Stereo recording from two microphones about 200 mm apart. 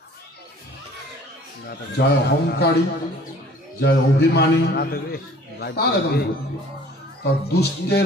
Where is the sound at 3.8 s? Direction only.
55° left (ahead or behind).